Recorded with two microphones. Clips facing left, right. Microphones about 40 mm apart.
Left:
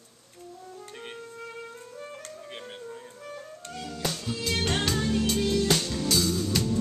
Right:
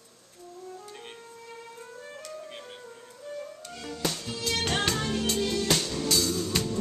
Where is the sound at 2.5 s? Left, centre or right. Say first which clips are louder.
Left 2 dB; centre.